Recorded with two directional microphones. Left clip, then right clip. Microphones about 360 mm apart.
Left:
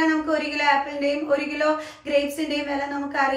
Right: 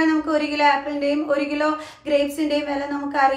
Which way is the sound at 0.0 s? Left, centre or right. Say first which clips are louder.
Right 2 dB; centre.